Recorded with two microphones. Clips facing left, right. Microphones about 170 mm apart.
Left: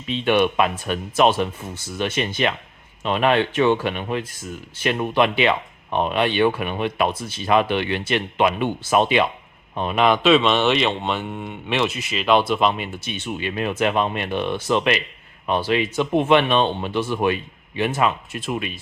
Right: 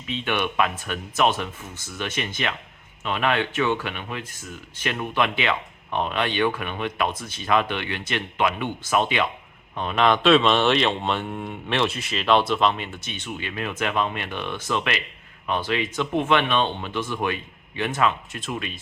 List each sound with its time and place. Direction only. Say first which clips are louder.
0.3 s speech: left 6 dB; 20° left (ahead or behind)
13.2 s speech: left 6 dB; 25° left (ahead or behind)